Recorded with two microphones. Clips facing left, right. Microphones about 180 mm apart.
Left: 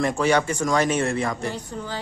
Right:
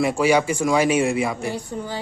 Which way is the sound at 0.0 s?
10° right (ahead or behind).